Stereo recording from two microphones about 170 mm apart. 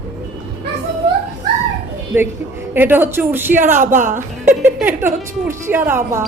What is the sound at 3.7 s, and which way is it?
Speech, 50° right (ahead or behind).